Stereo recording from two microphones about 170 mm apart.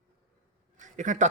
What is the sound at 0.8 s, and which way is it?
Speech, 45° right (ahead or behind).